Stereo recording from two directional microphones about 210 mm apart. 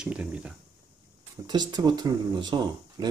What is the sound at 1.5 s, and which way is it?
Speech, 20° right (ahead or behind).